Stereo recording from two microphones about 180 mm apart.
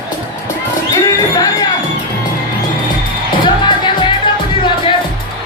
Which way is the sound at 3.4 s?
25° left (ahead or behind).